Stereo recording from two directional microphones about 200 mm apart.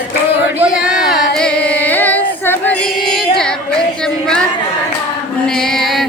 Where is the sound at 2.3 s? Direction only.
10° left (ahead or behind).